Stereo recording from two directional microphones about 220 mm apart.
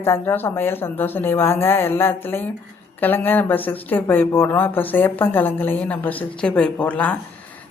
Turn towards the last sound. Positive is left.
turn(degrees=5)  # may be behind; listen again after turning